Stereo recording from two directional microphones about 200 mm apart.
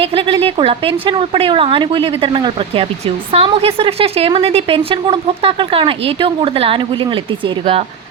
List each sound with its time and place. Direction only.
0.0 s speech: 30° right (ahead or behind)